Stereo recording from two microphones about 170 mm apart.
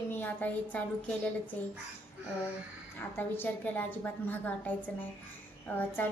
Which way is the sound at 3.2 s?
10° left (ahead or behind).